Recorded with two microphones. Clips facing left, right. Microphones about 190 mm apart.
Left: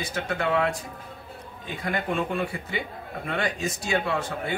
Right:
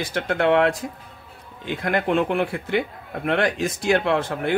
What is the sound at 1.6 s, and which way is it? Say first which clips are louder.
A man's voice: right 6 dB; 85° right.